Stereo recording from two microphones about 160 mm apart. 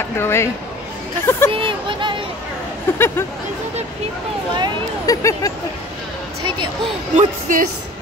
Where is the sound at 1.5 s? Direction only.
30° right (ahead or behind).